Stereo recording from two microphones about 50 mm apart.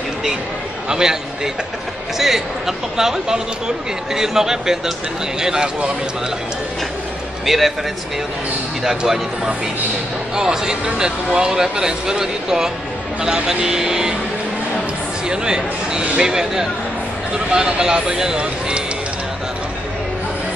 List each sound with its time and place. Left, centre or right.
0.8 s a man's voice: centre
7.4 s a man's voice: centre
8.8 s speech: centre
15.2 s speech: centre
17.5 s speech: right